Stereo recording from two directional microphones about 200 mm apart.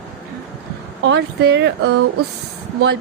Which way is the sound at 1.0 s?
60° right (ahead or behind).